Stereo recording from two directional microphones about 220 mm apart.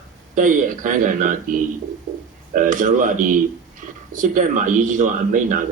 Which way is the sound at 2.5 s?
35° right (ahead or behind).